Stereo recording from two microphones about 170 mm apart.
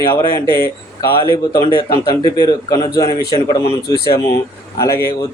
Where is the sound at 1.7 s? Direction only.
25° left (ahead or behind).